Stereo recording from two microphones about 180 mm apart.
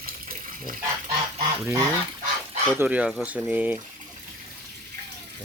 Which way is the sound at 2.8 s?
5° right (ahead or behind).